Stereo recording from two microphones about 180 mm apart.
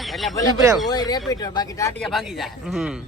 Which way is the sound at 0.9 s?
20° left (ahead or behind).